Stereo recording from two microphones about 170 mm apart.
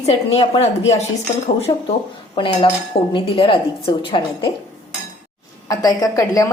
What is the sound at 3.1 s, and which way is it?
Speech, 30° left (ahead or behind).